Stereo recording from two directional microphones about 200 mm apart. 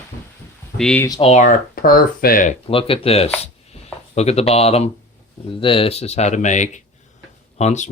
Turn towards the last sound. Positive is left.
turn(degrees=35)  # may be behind; listen again after turning